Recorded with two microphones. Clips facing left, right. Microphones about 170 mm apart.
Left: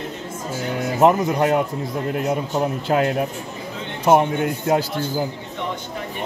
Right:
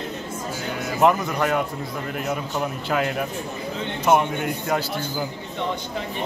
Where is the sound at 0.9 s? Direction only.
25° left (ahead or behind).